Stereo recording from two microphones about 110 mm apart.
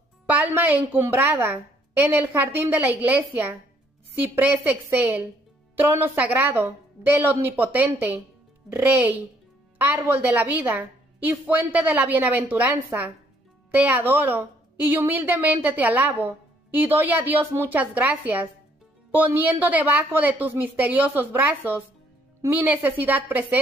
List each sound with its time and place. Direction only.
0.3 s a woman's voice: 15° right (ahead or behind)